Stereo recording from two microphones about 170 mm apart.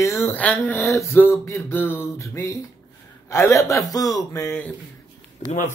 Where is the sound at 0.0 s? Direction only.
15° left (ahead or behind).